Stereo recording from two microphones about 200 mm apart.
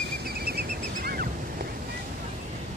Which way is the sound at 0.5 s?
50° right (ahead or behind).